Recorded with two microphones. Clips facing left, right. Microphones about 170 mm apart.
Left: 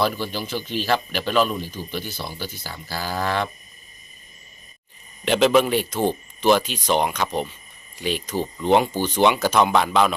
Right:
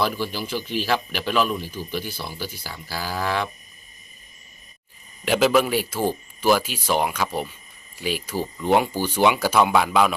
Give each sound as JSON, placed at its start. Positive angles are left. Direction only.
{"t": 0.0, "sound": "speech", "side_deg": -5}
{"t": 5.2, "sound": "speech", "side_deg": -5}